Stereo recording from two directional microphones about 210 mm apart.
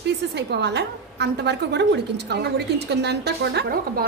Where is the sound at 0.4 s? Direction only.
55° right (ahead or behind).